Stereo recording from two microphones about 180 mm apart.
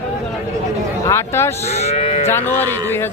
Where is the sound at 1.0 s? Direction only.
15° left (ahead or behind).